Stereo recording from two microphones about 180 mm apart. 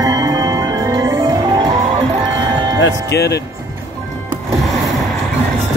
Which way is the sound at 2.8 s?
70° left (ahead or behind).